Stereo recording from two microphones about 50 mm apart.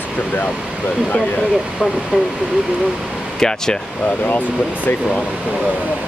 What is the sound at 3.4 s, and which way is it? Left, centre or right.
Speech, centre.